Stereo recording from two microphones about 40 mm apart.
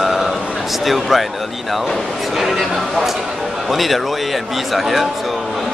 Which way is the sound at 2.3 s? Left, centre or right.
Centre.